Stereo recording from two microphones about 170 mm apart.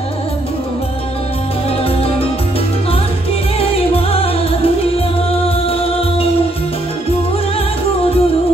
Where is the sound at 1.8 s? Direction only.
35° left (ahead or behind).